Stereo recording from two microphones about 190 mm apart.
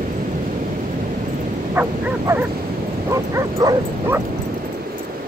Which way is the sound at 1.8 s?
10° right (ahead or behind).